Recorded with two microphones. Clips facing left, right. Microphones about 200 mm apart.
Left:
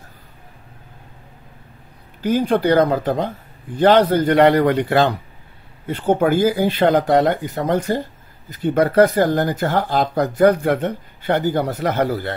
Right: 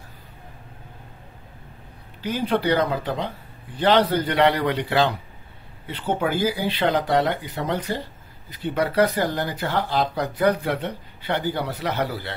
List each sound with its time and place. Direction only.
2.2 s speech: 45° left (ahead or behind)